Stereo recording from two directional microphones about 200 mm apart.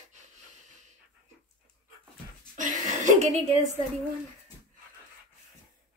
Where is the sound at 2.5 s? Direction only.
40° right (ahead or behind).